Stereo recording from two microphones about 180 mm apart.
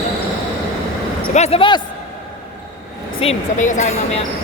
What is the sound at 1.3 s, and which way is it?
Speech, 35° left (ahead or behind).